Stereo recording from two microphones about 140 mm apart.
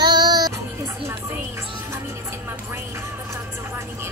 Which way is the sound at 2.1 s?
20° right (ahead or behind).